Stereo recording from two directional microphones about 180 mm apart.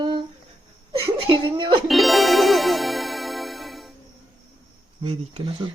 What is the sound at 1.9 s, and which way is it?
Music, centre (ahead or behind).